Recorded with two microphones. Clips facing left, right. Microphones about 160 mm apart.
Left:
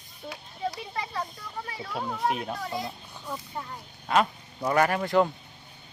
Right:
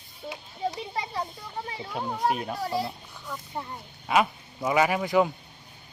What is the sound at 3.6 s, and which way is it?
Speech, 25° right (ahead or behind).